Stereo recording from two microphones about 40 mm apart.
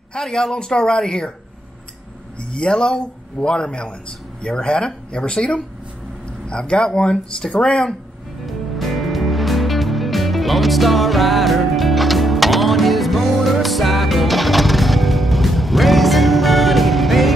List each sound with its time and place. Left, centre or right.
0.1 s speech: centre
2.3 s speech: left
8.5 s music: centre